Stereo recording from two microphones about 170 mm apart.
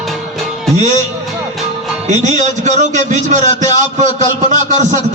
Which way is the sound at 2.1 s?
45° right (ahead or behind).